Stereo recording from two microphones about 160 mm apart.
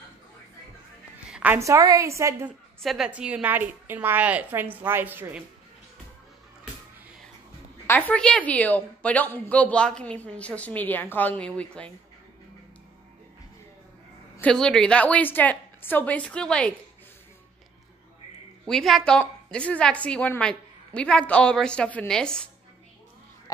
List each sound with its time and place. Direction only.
1.3 s a woman's voice: 10° right (ahead or behind)
2.8 s a woman's voice: centre (ahead or behind)
7.8 s a woman's voice: 10° left (ahead or behind)
14.4 s a woman's voice: 5° left (ahead or behind)
18.7 s a woman's voice: centre (ahead or behind)